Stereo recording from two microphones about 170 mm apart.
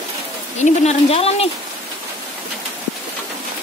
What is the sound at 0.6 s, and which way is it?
Speech, 40° left (ahead or behind).